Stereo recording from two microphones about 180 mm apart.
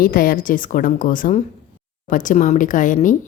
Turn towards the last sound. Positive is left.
turn(degrees=45)  # may be behind; listen again after turning